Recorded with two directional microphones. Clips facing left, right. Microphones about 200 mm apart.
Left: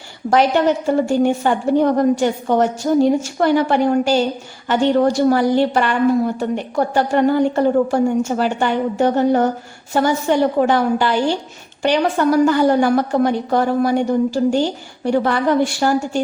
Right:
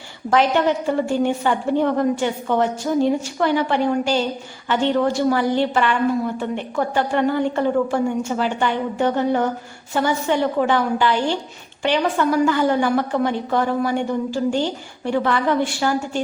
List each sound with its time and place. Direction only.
0.3 s a woman's voice: 40° left (ahead or behind)